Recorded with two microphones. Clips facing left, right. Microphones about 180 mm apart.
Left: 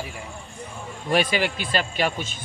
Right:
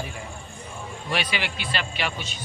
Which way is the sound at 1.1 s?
45° left (ahead or behind).